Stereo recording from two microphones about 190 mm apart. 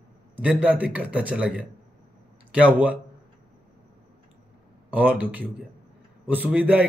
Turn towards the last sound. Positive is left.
turn(degrees=-10)  # may be behind; listen again after turning